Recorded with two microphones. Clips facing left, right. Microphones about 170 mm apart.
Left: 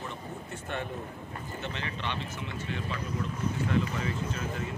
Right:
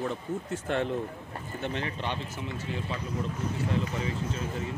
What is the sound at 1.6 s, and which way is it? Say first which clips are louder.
Speech: right 5 dB; 45° right (ahead or behind).